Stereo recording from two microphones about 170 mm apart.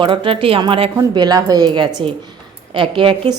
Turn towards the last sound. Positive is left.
turn(degrees=-30)  # may be behind; listen again after turning